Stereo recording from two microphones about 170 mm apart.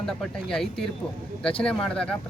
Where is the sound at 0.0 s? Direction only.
5° left (ahead or behind).